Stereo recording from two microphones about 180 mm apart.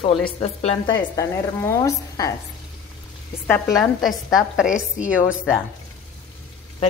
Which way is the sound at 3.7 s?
Centre (ahead or behind).